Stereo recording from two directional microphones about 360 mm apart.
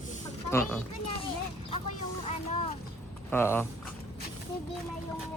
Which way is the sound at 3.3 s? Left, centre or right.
Centre.